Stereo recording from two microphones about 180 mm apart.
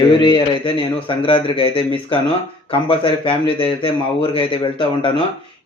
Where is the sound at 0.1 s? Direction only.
25° left (ahead or behind).